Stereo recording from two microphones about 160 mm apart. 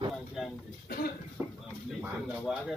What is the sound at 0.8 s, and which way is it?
Cough, 65° left (ahead or behind).